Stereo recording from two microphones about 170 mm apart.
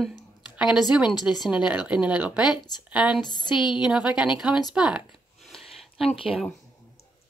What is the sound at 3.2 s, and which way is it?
Speech, 25° left (ahead or behind).